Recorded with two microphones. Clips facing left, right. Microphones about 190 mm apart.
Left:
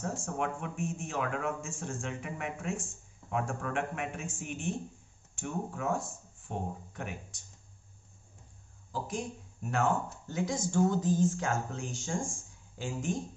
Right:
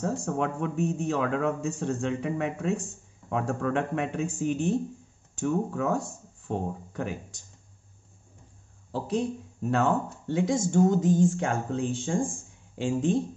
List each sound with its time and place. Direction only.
0.0 s speech: 40° right (ahead or behind)
5.8 s speech: 35° right (ahead or behind)
6.0 s a sound: 70° right (ahead or behind)
6.9 s speech: 35° right (ahead or behind)
8.9 s speech: 30° right (ahead or behind)